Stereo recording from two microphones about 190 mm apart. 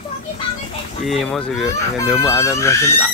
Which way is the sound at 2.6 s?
15° left (ahead or behind).